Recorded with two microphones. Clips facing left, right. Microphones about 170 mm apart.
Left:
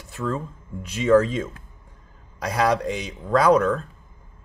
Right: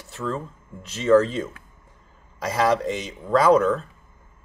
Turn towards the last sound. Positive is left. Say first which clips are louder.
# even
turn(degrees=-5)  # may be behind; listen again after turning